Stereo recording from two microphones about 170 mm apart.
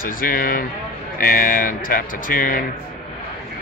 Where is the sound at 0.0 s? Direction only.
55° left (ahead or behind).